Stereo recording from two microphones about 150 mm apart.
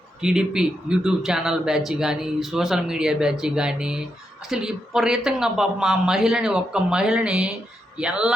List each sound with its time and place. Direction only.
0.2 s speech: 5° right (ahead or behind)